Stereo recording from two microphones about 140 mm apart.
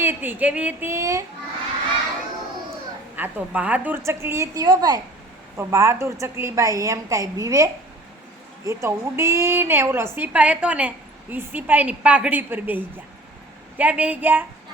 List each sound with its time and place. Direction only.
0.0 s a woman's voice: 15° right (ahead or behind)
3.2 s a woman's voice: 10° right (ahead or behind)